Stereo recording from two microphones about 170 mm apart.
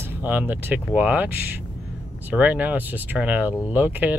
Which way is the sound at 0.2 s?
10° right (ahead or behind).